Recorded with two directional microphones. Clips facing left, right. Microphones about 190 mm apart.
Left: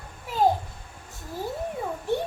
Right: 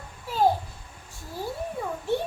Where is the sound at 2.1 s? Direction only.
15° left (ahead or behind).